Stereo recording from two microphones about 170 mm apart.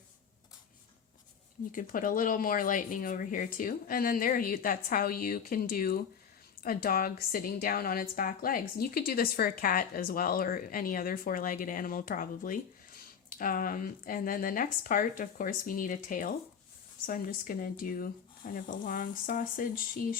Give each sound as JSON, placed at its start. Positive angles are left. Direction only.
{"t": 1.7, "sound": "a woman's voice", "side_deg": 55}